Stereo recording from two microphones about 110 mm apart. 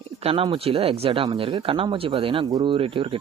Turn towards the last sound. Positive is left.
turn(degrees=-55)  # may be behind; listen again after turning